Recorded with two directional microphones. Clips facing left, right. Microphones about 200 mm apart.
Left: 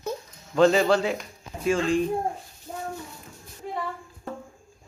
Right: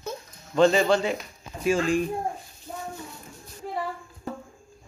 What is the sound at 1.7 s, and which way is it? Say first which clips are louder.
Speech: even; 10° right (ahead or behind).